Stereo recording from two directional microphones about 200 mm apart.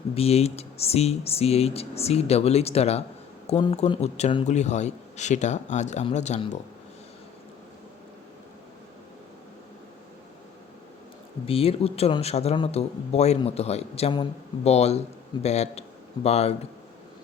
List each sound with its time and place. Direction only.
0.1 s a man's voice: 30° left (ahead or behind)
11.4 s a man's voice: 30° left (ahead or behind)